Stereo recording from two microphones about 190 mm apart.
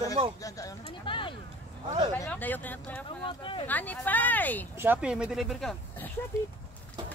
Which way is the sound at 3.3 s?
25° left (ahead or behind).